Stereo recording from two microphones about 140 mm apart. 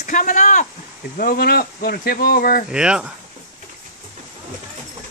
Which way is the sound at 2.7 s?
5° right (ahead or behind).